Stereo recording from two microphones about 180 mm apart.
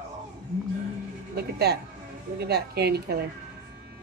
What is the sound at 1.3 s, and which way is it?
A woman's voice, 65° right (ahead or behind).